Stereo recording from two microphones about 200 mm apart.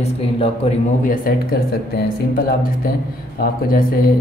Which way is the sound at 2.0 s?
45° left (ahead or behind).